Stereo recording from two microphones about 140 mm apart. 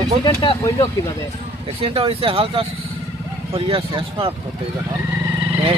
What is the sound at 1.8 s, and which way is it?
Speech, 40° right (ahead or behind).